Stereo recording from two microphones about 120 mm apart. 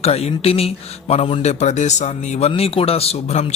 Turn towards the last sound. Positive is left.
turn(degrees=65)  # may be behind; listen again after turning